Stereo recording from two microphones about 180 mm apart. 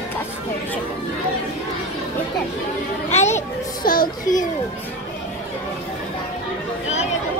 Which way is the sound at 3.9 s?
50° left (ahead or behind).